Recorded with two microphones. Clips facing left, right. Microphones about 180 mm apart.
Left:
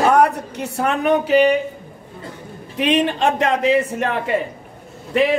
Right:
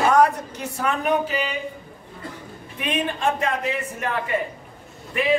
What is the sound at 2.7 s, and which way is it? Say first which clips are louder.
Speech: left 8 dB; 80° left.